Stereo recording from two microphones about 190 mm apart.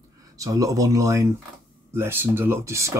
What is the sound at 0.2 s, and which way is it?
Speech, 20° right (ahead or behind).